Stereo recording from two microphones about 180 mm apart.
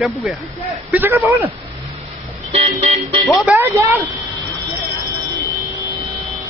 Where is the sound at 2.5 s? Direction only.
35° right (ahead or behind).